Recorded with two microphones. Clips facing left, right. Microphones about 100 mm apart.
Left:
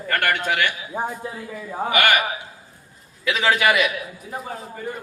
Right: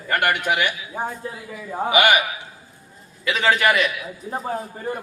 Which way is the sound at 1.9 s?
15° right (ahead or behind).